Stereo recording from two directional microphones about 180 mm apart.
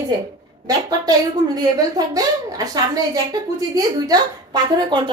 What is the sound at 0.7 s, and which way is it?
A woman's voice, 20° right (ahead or behind).